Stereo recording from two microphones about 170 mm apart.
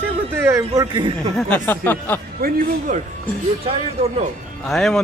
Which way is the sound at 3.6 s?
35° right (ahead or behind).